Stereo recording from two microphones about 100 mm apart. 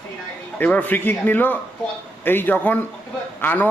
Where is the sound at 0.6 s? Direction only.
15° left (ahead or behind).